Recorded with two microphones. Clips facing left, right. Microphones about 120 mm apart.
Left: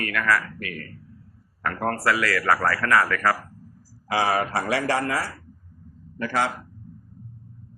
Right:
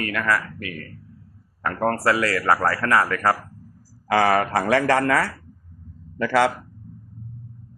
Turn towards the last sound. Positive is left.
turn(degrees=-75)  # may be behind; listen again after turning